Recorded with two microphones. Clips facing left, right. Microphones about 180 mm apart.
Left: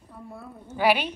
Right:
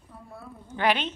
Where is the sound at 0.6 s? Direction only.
10° left (ahead or behind).